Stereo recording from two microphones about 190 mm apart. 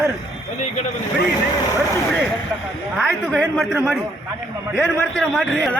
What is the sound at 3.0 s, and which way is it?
A man's voice, 5° right (ahead or behind).